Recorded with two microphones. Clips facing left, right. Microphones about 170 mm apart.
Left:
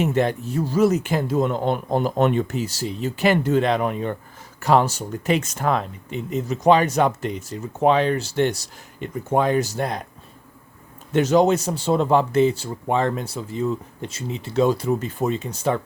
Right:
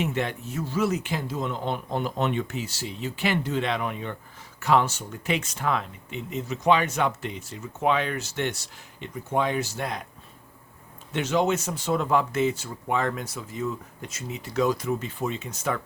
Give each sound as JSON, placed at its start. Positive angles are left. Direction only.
{"t": 0.0, "sound": "speech", "side_deg": 40}
{"t": 11.1, "sound": "speech", "side_deg": 40}